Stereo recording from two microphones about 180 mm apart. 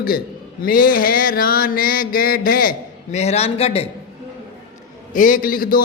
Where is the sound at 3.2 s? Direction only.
35° left (ahead or behind).